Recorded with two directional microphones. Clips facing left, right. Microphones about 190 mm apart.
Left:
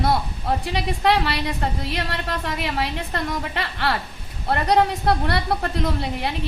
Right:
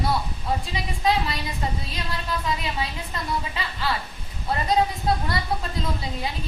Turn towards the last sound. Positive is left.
turn(degrees=75)  # may be behind; listen again after turning